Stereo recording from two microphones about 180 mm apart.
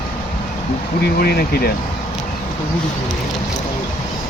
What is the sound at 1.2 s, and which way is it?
Speech, 60° left (ahead or behind).